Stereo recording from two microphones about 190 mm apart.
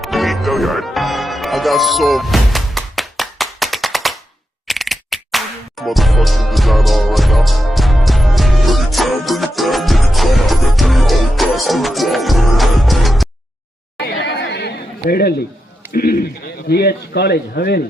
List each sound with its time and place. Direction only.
0.0 s music: centre (ahead or behind)
14.0 s chatter: 60° left (ahead or behind)
15.0 s a sound: 55° left (ahead or behind)